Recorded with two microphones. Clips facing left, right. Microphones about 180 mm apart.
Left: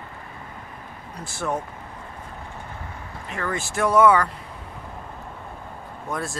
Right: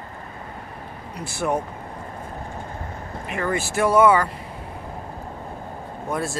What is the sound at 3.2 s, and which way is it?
Speech, 10° right (ahead or behind).